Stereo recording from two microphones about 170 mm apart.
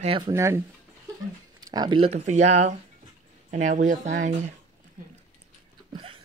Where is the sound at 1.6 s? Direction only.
25° right (ahead or behind); by 4.6 s 45° right (ahead or behind).